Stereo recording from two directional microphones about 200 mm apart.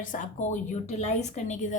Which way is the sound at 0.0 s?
40° left (ahead or behind).